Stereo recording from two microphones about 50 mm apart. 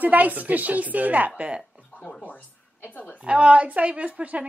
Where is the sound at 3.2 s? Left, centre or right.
Right.